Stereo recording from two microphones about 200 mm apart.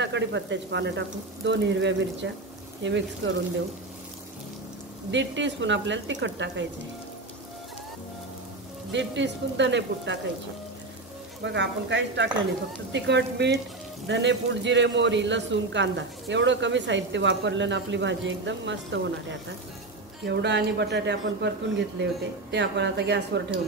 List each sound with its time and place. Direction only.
0.0 s a man's voice: 65° right (ahead or behind)
5.1 s a man's voice: 65° right (ahead or behind)
8.9 s a man's voice: 65° right (ahead or behind)
11.4 s a man's voice: 60° right (ahead or behind)